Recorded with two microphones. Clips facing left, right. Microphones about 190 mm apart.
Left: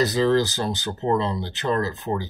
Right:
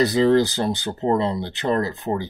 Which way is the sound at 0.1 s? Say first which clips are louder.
Right 3 dB; 15° right (ahead or behind).